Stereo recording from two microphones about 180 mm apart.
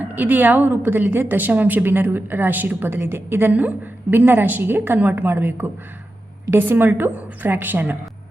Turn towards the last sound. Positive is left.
turn(degrees=-10)  # may be behind; listen again after turning